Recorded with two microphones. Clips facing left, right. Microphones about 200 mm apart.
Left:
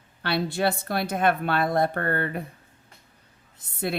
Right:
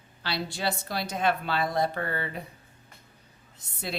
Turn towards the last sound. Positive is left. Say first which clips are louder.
# left 7 dB
turn(degrees=55)  # may be behind; listen again after turning